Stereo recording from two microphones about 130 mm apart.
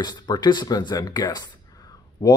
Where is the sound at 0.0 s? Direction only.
35° left (ahead or behind).